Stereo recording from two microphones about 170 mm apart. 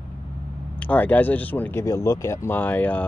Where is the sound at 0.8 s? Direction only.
10° left (ahead or behind).